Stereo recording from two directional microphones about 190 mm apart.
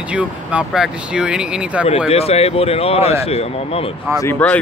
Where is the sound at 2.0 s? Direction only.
30° left (ahead or behind).